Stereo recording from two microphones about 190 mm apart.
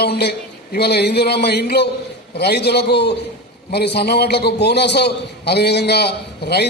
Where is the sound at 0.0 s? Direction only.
60° left (ahead or behind).